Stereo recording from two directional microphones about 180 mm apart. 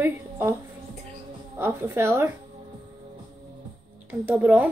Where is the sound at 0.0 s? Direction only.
15° right (ahead or behind).